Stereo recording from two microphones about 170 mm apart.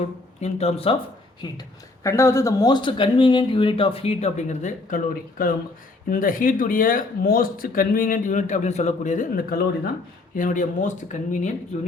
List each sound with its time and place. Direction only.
0.3 s speech: 40° left (ahead or behind)
2.0 s speech: 15° left (ahead or behind); by 9.9 s 60° left (ahead or behind)
10.3 s speech: 50° left (ahead or behind)